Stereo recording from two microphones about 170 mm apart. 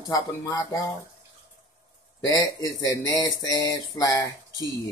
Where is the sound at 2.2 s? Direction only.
20° left (ahead or behind).